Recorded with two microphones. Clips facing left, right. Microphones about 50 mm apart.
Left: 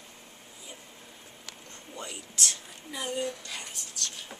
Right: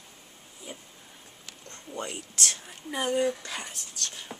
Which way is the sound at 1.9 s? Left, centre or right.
Right.